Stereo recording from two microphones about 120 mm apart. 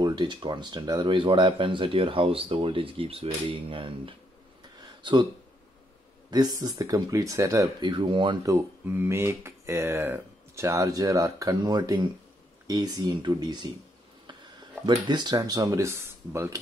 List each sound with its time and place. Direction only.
0.0 s speech: 40° right (ahead or behind)
4.7 s a sound: 35° right (ahead or behind)
6.3 s speech: 35° right (ahead or behind)
7.8 s speech: 45° right (ahead or behind)
8.4 s speech: 30° right (ahead or behind)
8.8 s speech: 15° right (ahead or behind); by 13.7 s 35° right (ahead or behind)
14.9 s speech: 35° right (ahead or behind)